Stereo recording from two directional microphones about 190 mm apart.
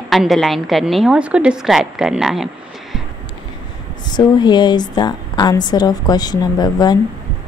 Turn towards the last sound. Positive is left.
turn(degrees=20)  # may be behind; listen again after turning